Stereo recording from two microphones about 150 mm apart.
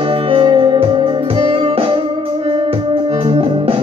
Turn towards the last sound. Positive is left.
turn(degrees=-40)  # may be behind; listen again after turning